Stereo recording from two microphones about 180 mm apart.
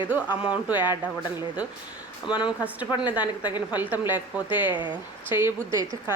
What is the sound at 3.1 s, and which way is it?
Speech, 10° right (ahead or behind).